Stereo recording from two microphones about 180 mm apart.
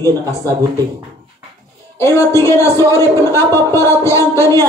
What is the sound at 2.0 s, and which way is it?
A man's voice, 15° left (ahead or behind).